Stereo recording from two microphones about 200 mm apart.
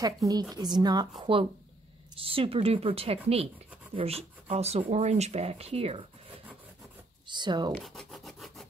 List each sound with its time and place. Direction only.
0.0 s a woman's voice: 20° right (ahead or behind)
7.2 s speech: 20° right (ahead or behind)
7.7 s rub: centre (ahead or behind)